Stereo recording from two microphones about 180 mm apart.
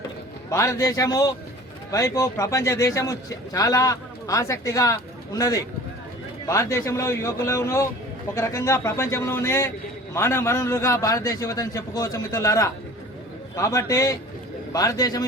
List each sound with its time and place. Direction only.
0.5 s a man's voice: 20° left (ahead or behind)